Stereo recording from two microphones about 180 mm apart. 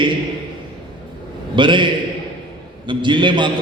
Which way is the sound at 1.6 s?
25° right (ahead or behind).